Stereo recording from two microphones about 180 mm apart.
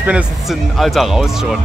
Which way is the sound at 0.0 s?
5° right (ahead or behind).